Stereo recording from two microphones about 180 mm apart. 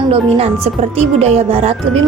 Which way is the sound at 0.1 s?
35° right (ahead or behind).